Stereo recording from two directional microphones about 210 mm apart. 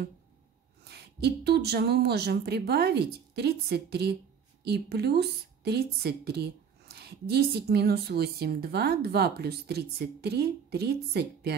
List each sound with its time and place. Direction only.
0.8 s a woman's voice: 50° right (ahead or behind)